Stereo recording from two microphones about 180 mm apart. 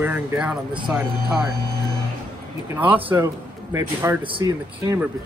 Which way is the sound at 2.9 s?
10° right (ahead or behind).